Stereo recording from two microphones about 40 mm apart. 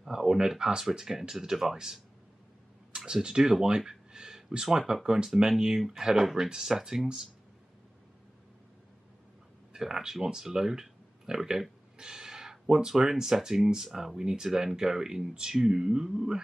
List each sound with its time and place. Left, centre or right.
0.0 s speech: centre
3.1 s speech: centre
9.8 s speech: centre